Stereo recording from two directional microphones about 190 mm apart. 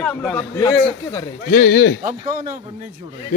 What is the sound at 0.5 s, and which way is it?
Speech, 20° left (ahead or behind).